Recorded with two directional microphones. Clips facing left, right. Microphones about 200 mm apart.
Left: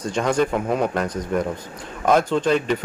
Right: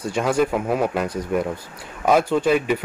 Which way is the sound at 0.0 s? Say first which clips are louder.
Even; 5° right (ahead or behind).